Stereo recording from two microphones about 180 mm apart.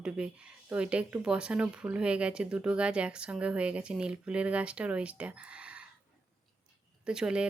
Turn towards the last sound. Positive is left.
turn(degrees=-5)  # may be behind; listen again after turning